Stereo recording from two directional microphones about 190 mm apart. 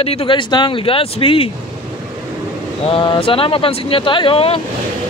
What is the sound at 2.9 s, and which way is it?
Speech, 30° left (ahead or behind).